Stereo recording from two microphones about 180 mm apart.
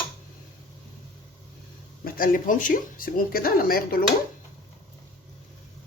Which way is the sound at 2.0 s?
50° left (ahead or behind).